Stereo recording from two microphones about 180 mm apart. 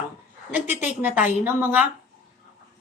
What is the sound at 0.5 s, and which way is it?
Speech, 10° right (ahead or behind).